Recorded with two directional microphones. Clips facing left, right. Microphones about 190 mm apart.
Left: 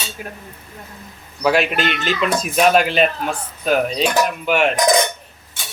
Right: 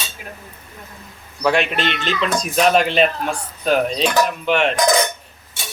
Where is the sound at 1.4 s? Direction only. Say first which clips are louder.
Left 1 dB; 5° left (ahead or behind).